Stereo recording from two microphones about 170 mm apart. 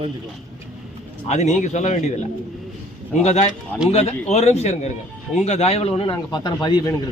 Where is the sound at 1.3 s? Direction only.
45° left (ahead or behind).